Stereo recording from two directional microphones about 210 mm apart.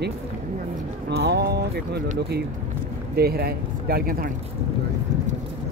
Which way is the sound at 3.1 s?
45° right (ahead or behind).